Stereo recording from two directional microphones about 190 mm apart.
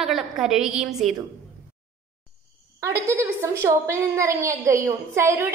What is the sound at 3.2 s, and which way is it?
A woman's voice, 15° right (ahead or behind).